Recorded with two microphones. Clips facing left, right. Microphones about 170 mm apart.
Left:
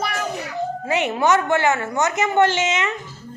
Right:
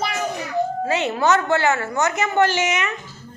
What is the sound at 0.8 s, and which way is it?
A woman's voice, 20° left (ahead or behind).